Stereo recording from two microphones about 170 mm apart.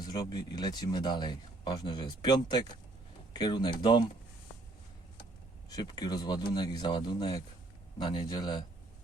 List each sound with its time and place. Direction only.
0.1 s speech: 25° left (ahead or behind)
5.6 s speech: 25° left (ahead or behind)